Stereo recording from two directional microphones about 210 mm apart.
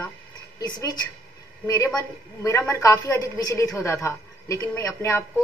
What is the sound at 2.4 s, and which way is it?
A woman's voice, 15° left (ahead or behind).